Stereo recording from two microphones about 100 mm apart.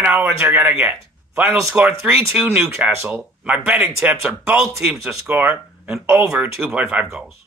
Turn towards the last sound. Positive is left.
turn(degrees=-10)  # may be behind; listen again after turning